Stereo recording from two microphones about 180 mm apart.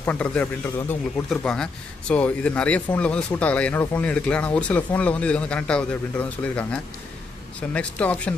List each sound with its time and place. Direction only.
0.0 s speech: 10° left (ahead or behind)